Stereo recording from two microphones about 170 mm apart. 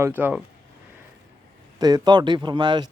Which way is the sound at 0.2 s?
10° right (ahead or behind).